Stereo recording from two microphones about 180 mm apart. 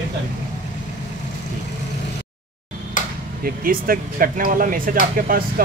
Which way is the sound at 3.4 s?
55° right (ahead or behind).